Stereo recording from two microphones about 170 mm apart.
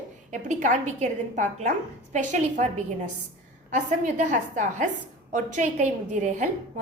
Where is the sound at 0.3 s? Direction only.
45° right (ahead or behind).